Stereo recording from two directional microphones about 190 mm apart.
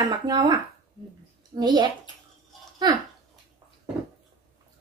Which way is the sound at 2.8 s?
20° right (ahead or behind).